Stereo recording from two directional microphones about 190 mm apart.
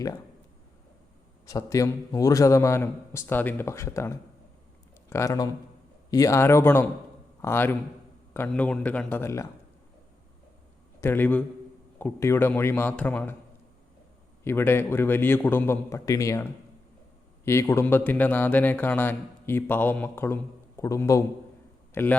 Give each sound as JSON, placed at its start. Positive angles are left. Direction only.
{"t": 1.5, "sound": "a man's voice", "side_deg": 15}
{"t": 11.0, "sound": "speech", "side_deg": 10}
{"t": 14.4, "sound": "speech", "side_deg": 10}